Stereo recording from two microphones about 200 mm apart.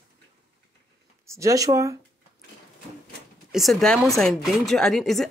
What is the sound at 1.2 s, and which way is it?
Speech, 15° right (ahead or behind).